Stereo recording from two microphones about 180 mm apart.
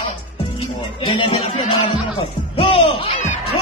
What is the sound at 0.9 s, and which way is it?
Music, 30° left (ahead or behind).